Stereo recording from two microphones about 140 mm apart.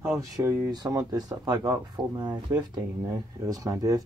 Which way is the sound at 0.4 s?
25° right (ahead or behind).